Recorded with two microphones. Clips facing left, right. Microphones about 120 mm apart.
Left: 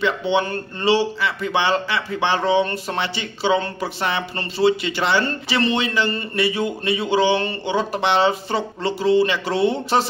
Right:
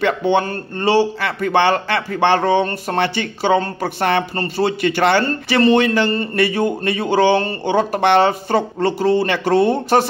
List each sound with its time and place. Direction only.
0.0 s a man's voice: 50° right (ahead or behind)
5.2 s a man's voice: 45° right (ahead or behind)